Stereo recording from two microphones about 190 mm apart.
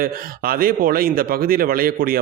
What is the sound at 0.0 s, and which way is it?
Speech, 50° right (ahead or behind).